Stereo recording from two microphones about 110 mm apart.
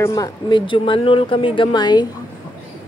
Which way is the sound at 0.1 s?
40° left (ahead or behind).